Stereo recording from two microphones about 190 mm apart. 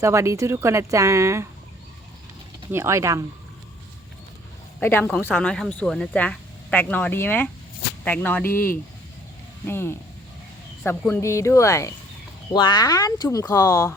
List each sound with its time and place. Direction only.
0.0 s speech: 15° right (ahead or behind)
2.7 s speech: 15° right (ahead or behind)
4.8 s speech: 10° left (ahead or behind)
11.1 s speech: 15° left (ahead or behind)